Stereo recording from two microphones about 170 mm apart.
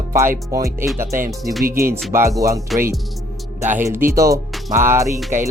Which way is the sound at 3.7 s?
15° right (ahead or behind).